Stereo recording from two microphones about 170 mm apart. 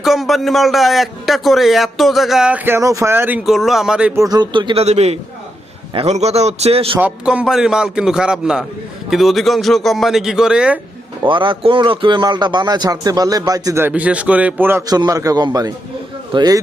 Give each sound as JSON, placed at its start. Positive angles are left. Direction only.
{"t": 0.0, "sound": "a man's voice", "side_deg": 0}
{"t": 4.2, "sound": "speech", "side_deg": -25}
{"t": 7.0, "sound": "a man's voice", "side_deg": -5}
{"t": 11.2, "sound": "speech", "side_deg": -30}